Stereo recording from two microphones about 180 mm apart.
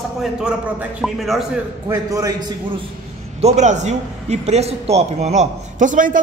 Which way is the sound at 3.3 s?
40° right (ahead or behind).